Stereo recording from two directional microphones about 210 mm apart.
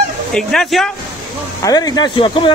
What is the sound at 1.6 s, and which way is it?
Speech, 15° left (ahead or behind).